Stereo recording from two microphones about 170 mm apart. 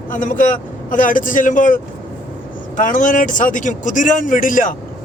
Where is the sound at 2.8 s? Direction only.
50° left (ahead or behind).